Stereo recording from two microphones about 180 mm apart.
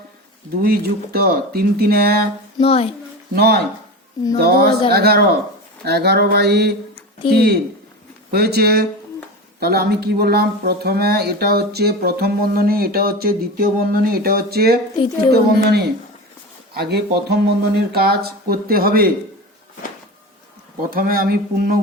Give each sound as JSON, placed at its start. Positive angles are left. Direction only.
{"t": 0.6, "sound": "speech", "side_deg": -55}
{"t": 2.6, "sound": "a child's voice", "side_deg": 35}
{"t": 3.3, "sound": "speech", "side_deg": -60}
{"t": 20.9, "sound": "a sound", "side_deg": -55}